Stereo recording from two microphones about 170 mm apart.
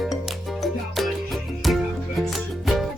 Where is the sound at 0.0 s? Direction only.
Centre (ahead or behind).